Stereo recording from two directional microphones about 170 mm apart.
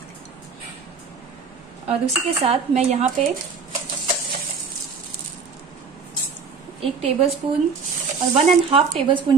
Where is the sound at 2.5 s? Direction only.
35° right (ahead or behind).